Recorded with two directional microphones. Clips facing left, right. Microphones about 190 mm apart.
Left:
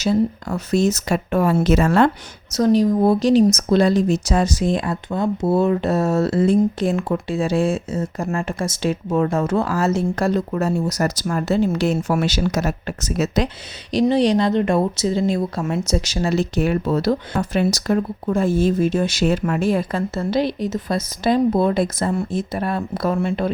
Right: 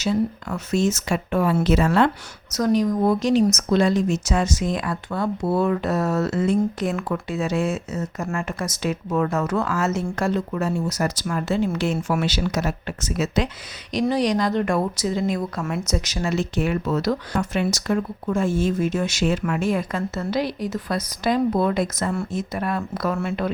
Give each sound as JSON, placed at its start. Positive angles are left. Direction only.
{"t": 0.0, "sound": "speech", "side_deg": 40}
{"t": 2.5, "sound": "a woman's voice", "side_deg": 30}
{"t": 14.0, "sound": "speech", "side_deg": 25}